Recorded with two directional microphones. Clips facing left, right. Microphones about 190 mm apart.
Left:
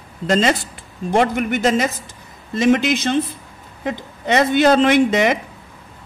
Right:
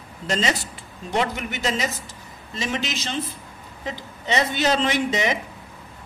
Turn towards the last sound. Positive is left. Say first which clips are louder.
# left 8 dB
turn(degrees=55)  # may be behind; listen again after turning